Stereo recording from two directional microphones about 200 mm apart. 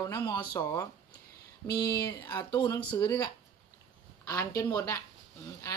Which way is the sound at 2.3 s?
20° left (ahead or behind).